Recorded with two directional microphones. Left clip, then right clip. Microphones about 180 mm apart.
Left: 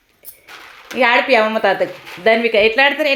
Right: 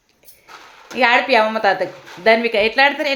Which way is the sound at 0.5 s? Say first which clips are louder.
Left 3 dB; centre (ahead or behind).